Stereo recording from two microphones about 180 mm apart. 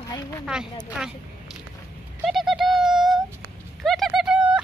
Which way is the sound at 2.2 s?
Centre (ahead or behind).